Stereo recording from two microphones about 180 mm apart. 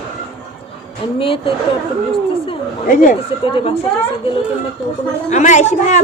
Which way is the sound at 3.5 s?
30° left (ahead or behind).